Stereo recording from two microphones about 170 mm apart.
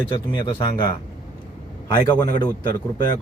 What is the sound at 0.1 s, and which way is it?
Speech, 30° left (ahead or behind).